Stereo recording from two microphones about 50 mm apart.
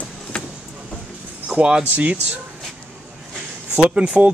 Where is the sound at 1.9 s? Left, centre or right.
Right.